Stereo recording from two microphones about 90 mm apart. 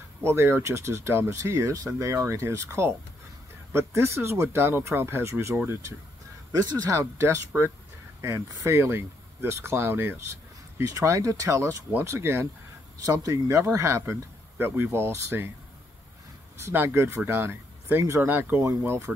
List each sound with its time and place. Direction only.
0.2 s speech: 30° right (ahead or behind)
6.5 s speech: 35° right (ahead or behind)
13.0 s speech: 40° right (ahead or behind)
16.6 s speech: 25° right (ahead or behind)